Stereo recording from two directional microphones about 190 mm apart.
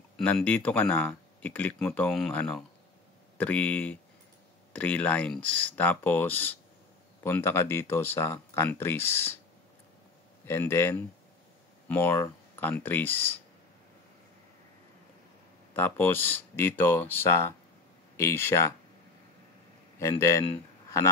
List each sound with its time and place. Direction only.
0.5 s speech: 10° left (ahead or behind)
10.4 s speech: 10° left (ahead or behind)
15.7 s speech: 10° left (ahead or behind)
20.0 s speech: 15° left (ahead or behind)